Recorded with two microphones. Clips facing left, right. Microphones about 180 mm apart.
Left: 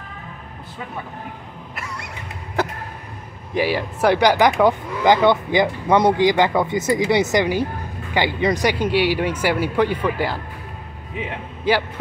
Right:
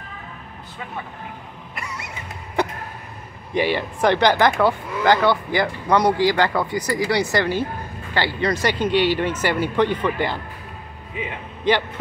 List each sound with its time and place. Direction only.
1.8 s a sound: centre (ahead or behind)
3.5 s speech: 5° left (ahead or behind)
11.7 s speech: 5° left (ahead or behind)